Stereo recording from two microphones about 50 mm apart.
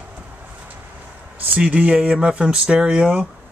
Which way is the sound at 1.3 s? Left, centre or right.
Right.